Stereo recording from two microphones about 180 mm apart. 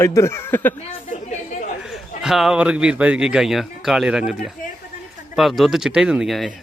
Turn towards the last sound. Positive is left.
turn(degrees=0)  # may be behind; listen again after turning